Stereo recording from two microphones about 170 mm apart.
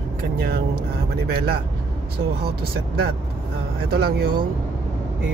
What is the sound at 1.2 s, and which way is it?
Speech, 65° right (ahead or behind).